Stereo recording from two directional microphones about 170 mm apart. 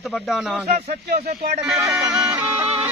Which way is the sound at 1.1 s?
70° right (ahead or behind).